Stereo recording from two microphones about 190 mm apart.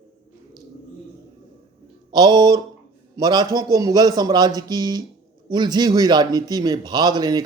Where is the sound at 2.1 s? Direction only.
25° right (ahead or behind).